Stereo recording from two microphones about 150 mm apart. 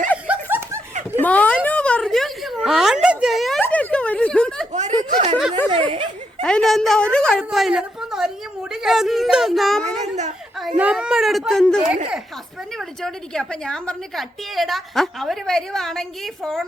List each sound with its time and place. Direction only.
0.3 s snicker: 15° right (ahead or behind)
1.2 s a sound: 10° left (ahead or behind)
2.6 s speech: centre (ahead or behind)
3.6 s a sound: 10° left (ahead or behind)
4.7 s speech: 50° right (ahead or behind)
6.4 s a woman's voice: 5° left (ahead or behind)
13.0 s a woman's voice: 5° left (ahead or behind)